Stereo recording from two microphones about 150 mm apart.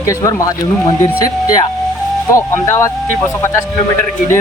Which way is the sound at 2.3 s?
20° left (ahead or behind).